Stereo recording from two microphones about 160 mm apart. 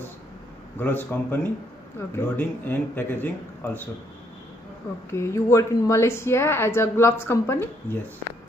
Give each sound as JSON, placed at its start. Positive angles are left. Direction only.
{"t": 0.7, "sound": "speech", "side_deg": 10}
{"t": 5.1, "sound": "speech", "side_deg": 20}